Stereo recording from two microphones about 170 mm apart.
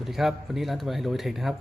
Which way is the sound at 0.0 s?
Centre (ahead or behind).